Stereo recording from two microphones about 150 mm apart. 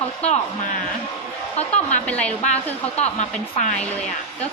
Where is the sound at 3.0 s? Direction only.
50° left (ahead or behind).